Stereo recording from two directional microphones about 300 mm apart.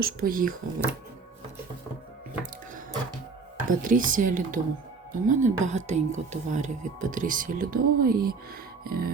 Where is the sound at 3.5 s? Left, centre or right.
Right.